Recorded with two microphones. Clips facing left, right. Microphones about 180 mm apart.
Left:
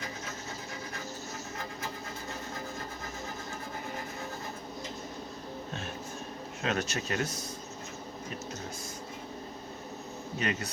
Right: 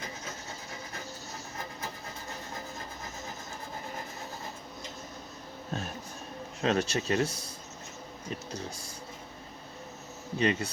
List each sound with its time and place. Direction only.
6.6 s speech: 30° right (ahead or behind)
10.3 s speech: 30° right (ahead or behind)